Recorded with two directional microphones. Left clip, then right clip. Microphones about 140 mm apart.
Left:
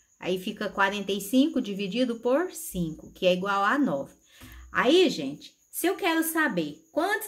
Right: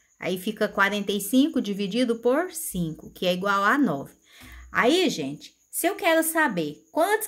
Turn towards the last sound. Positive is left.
turn(degrees=-30)  # may be behind; listen again after turning